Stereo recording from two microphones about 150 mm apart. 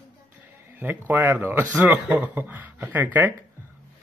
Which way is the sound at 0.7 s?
15° right (ahead or behind).